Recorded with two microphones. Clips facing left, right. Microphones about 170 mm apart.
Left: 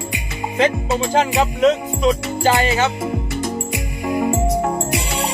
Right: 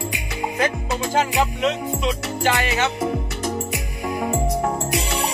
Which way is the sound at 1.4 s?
40° left (ahead or behind).